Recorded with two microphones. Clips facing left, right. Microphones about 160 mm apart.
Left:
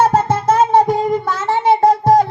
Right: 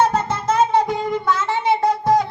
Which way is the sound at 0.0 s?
40° left (ahead or behind).